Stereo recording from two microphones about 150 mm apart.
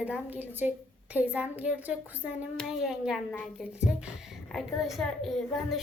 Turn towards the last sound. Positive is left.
turn(degrees=0)  # may be behind; listen again after turning